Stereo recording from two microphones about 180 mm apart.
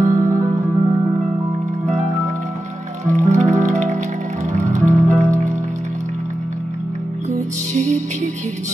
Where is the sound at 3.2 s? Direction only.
40° right (ahead or behind).